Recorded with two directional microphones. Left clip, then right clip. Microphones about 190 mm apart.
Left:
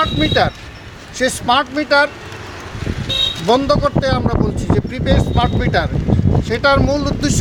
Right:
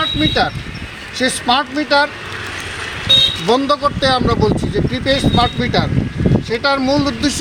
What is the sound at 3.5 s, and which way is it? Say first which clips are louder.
Speech: even; 25° left (ahead or behind).